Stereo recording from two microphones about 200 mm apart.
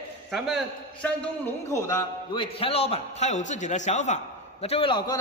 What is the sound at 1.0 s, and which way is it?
A man's voice, 10° left (ahead or behind).